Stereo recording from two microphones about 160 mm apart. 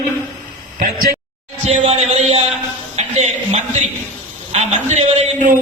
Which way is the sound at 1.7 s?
40° right (ahead or behind).